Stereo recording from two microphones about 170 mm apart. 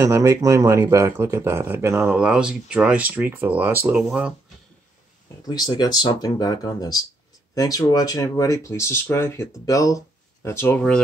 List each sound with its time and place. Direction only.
0.0 s speech: 15° right (ahead or behind)
5.4 s speech: 20° left (ahead or behind)